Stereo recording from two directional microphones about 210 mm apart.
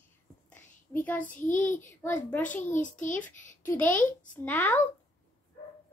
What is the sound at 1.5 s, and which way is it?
A child's voice, 40° left (ahead or behind).